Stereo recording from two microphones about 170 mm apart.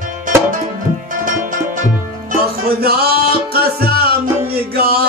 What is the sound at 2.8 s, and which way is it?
Music, 65° right (ahead or behind).